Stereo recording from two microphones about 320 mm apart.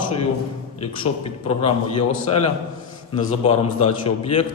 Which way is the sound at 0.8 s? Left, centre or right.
Centre.